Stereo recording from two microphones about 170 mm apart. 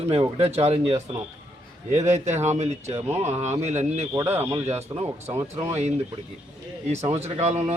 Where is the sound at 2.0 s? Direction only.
40° right (ahead or behind).